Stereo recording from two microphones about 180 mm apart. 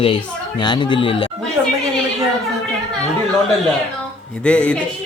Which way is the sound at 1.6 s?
10° right (ahead or behind).